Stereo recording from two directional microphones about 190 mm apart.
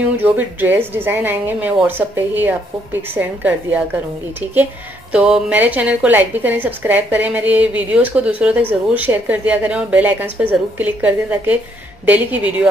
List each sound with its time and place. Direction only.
0.2 s a woman's voice: 10° right (ahead or behind)
5.1 s a woman's voice: 5° right (ahead or behind)